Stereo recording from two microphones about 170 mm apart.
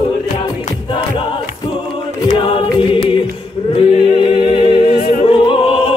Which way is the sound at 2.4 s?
30° left (ahead or behind).